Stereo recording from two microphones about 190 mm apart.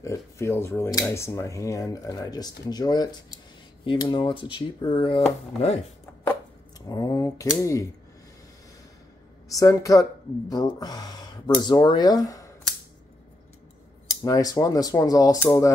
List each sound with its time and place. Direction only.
0.0 s speech: 15° left (ahead or behind)
6.9 s speech: 20° left (ahead or behind)
9.5 s speech: 15° left (ahead or behind)
14.2 s speech: 20° left (ahead or behind)